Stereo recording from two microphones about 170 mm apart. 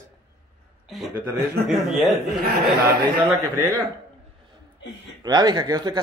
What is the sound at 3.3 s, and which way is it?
Speech, 20° right (ahead or behind).